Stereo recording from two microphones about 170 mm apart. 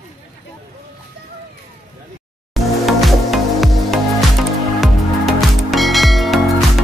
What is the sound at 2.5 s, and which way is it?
Music, centre (ahead or behind).